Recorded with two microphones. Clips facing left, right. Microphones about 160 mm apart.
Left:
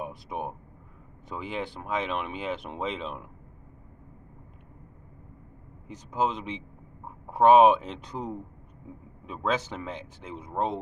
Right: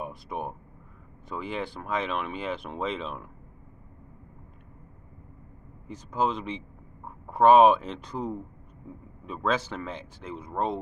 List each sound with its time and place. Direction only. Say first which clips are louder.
0.0 s speech: even; 15° left (ahead or behind)
5.9 s speech: right 1 dB; 20° left (ahead or behind)